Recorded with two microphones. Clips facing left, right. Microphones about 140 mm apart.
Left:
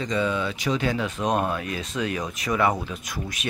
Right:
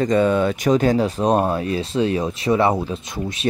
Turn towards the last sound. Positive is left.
turn(degrees=-25)  # may be behind; listen again after turning